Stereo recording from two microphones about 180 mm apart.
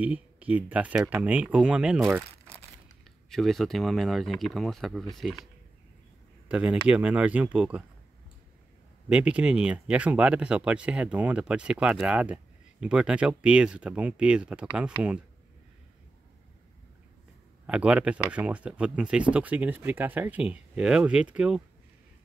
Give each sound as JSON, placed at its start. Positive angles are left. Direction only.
{"t": 0.0, "sound": "speech", "side_deg": -10}
{"t": 2.0, "sound": "speech", "side_deg": -15}
{"t": 3.3, "sound": "speech", "side_deg": 0}
{"t": 6.5, "sound": "speech", "side_deg": -5}
{"t": 9.1, "sound": "speech", "side_deg": -5}
{"t": 17.6, "sound": "speech", "side_deg": -5}